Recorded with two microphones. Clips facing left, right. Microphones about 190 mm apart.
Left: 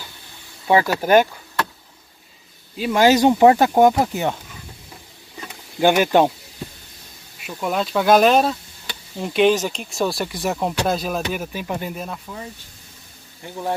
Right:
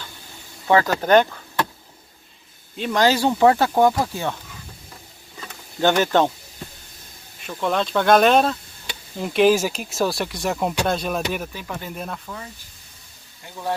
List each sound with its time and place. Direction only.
0.7 s speech: 15° left (ahead or behind)
2.8 s speech: 10° left (ahead or behind)
5.8 s speech: 10° left (ahead or behind)
7.4 s speech: 5° left (ahead or behind)
11.5 s speech: 15° left (ahead or behind)
11.9 s speech: centre (ahead or behind)